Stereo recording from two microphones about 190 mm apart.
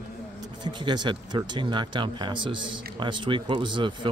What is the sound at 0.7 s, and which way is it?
Speech, 25° right (ahead or behind).